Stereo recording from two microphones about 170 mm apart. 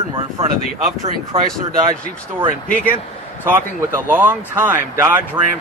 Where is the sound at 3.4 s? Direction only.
10° right (ahead or behind).